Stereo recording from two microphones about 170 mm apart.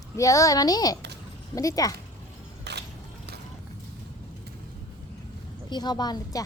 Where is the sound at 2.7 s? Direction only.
80° right.